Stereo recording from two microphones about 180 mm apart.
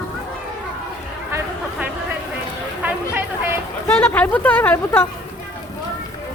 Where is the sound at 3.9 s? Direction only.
10° left (ahead or behind).